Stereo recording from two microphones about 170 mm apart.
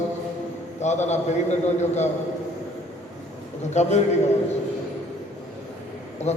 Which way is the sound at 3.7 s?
40° left (ahead or behind).